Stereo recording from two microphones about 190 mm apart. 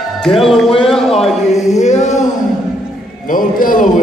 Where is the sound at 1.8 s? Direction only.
40° left (ahead or behind).